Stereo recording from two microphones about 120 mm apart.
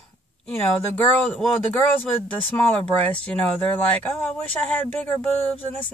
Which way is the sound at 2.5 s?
10° left (ahead or behind).